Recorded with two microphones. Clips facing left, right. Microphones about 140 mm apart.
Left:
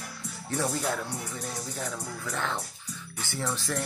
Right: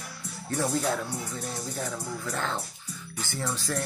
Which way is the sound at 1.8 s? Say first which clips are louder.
Right 2 dB; 15° right (ahead or behind).